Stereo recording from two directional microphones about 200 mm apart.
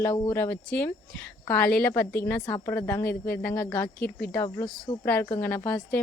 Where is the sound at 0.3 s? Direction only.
10° left (ahead or behind).